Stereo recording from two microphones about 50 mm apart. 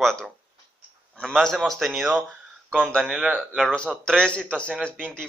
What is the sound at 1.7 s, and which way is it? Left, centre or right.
Speech, centre.